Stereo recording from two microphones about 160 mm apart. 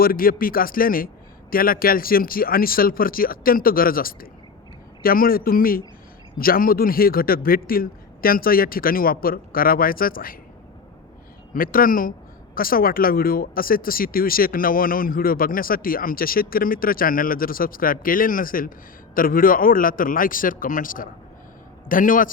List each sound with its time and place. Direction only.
0.0 s speech: 65° left (ahead or behind)
11.5 s speech: 65° left (ahead or behind)